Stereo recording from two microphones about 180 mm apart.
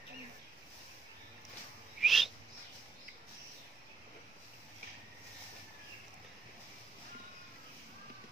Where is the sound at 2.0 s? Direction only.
Centre (ahead or behind).